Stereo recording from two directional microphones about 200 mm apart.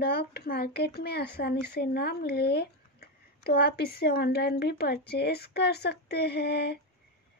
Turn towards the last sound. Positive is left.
turn(degrees=55)  # may be behind; listen again after turning